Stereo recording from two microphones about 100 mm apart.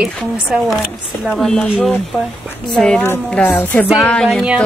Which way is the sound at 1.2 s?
Centre (ahead or behind).